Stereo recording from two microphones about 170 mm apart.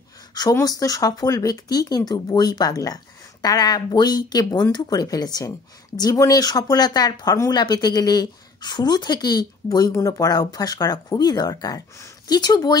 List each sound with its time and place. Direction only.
0.3 s speech: 20° left (ahead or behind)